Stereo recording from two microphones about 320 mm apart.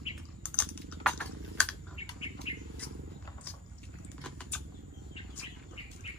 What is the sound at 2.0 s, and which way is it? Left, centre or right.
Bird, centre.